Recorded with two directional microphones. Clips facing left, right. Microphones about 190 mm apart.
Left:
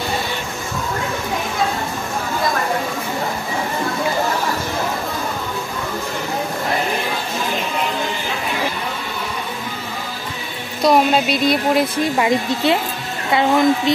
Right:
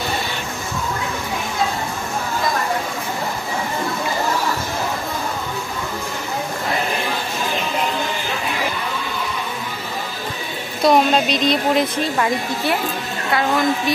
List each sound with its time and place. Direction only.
10.8 s a woman's voice: 5° left (ahead or behind)
12.2 s a woman's voice: 20° left (ahead or behind)